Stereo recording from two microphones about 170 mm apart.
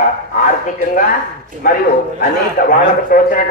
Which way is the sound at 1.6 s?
55° left (ahead or behind).